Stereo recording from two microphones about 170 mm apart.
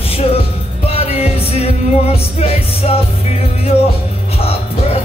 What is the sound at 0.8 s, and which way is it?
Music, 35° left (ahead or behind).